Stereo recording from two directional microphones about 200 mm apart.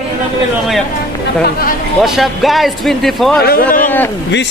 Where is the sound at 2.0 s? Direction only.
Centre (ahead or behind).